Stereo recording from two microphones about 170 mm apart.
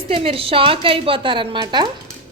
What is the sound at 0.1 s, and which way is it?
A woman's voice, 35° right (ahead or behind).